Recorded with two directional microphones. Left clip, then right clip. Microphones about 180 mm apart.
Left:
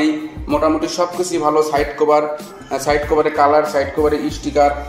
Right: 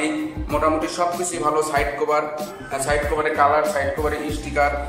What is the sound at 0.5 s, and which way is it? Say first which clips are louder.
A man's voice: left 4 dB; 15° left (ahead or behind).